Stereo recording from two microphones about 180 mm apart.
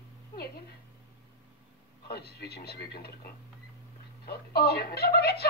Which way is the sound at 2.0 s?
60° left (ahead or behind).